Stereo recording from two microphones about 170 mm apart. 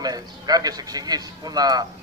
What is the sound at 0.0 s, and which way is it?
A man's voice, 20° right (ahead or behind).